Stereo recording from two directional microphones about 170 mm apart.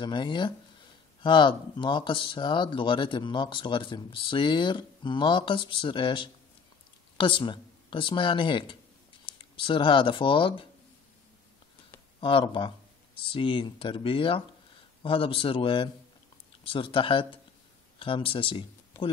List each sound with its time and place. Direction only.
0.0 s speech: 25° left (ahead or behind)
12.2 s speech: 30° left (ahead or behind)